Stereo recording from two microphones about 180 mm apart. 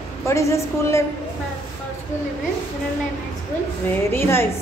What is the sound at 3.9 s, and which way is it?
Speech, 10° left (ahead or behind).